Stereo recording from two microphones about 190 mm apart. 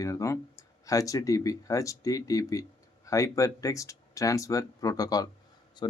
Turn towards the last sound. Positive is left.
turn(degrees=25)  # may be behind; listen again after turning